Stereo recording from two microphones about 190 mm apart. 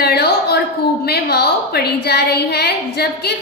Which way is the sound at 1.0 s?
60° left (ahead or behind).